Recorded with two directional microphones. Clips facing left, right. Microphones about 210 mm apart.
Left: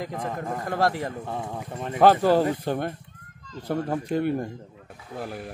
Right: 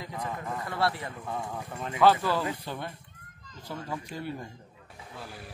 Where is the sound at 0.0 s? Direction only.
45° left (ahead or behind).